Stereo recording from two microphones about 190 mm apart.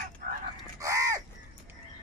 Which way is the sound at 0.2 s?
45° right (ahead or behind).